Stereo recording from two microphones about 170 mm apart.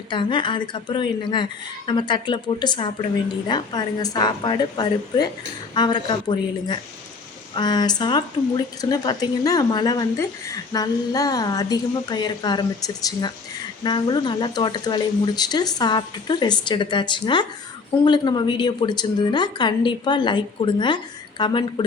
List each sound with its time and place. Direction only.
0.1 s speech: 30° left (ahead or behind)